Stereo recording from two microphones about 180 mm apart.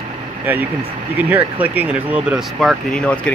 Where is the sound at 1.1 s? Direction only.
10° right (ahead or behind).